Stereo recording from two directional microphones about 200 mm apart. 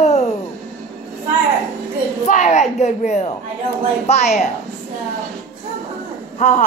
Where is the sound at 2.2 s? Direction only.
35° left (ahead or behind).